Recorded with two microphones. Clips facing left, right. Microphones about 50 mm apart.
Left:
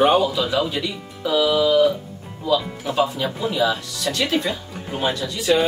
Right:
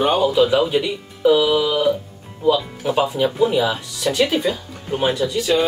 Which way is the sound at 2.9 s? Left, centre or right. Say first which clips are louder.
Right 3 dB; centre.